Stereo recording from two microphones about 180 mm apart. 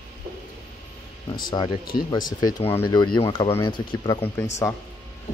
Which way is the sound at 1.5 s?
25° left (ahead or behind).